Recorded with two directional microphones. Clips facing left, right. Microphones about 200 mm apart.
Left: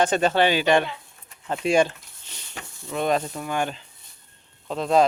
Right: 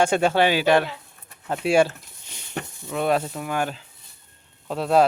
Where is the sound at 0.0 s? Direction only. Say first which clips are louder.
Right 1 dB; 10° right (ahead or behind).